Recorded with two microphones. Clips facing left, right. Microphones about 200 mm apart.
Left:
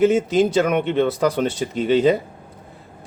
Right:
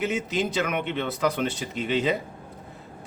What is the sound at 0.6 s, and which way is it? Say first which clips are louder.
Speech: left 9 dB; 40° left (ahead or behind).